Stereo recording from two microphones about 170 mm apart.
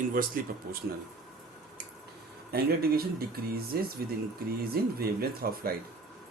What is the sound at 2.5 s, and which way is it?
Speech, 65° right (ahead or behind).